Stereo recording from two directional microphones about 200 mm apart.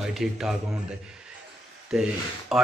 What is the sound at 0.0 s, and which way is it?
Speech, centre (ahead or behind).